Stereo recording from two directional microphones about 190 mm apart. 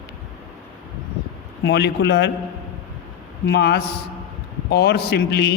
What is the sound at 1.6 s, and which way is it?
Speech, 60° left (ahead or behind).